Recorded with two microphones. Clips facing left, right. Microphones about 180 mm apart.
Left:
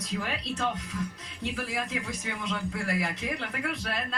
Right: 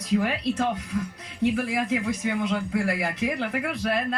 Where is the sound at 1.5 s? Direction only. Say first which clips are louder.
Right 8 dB; 60° right (ahead or behind).